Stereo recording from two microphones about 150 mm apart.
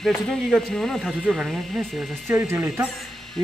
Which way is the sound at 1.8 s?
15° right (ahead or behind).